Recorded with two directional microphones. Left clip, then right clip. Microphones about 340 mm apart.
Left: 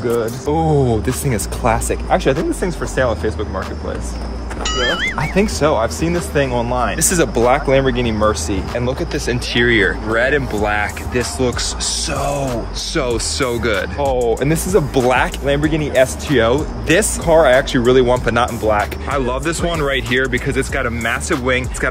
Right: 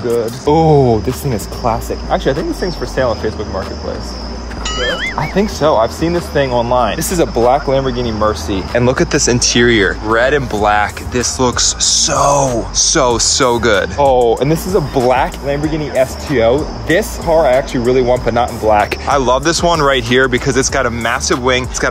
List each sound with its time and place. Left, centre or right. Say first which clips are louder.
0.5 s speech: right 8 dB; right
1.6 s speech: even; centre
4.6 s speech: even; centre
5.3 s speech: right 4 dB; centre
8.7 s speech: right 10 dB; right
9.5 s speech: right 1 dB; centre